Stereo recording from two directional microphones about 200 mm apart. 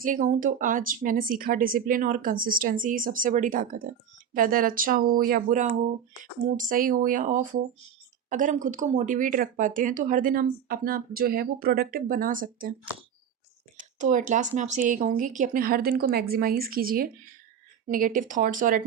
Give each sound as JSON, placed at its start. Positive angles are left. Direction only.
{"t": 0.0, "sound": "speech", "side_deg": -40}
{"t": 14.0, "sound": "speech", "side_deg": -40}